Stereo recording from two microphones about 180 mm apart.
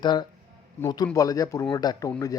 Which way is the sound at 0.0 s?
25° left (ahead or behind).